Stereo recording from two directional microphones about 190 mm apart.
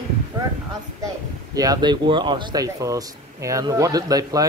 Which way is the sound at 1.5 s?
20° right (ahead or behind).